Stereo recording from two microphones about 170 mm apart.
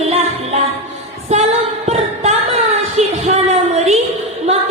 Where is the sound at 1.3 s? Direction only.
40° right (ahead or behind).